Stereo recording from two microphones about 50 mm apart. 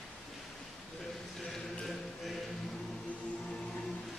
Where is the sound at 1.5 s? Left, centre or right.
Centre.